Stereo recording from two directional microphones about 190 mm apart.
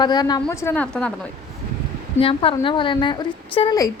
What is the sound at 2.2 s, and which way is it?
A woman's voice, 30° left (ahead or behind).